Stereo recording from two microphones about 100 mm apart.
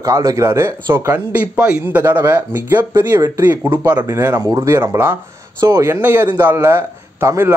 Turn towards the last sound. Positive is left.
turn(degrees=-25)  # may be behind; listen again after turning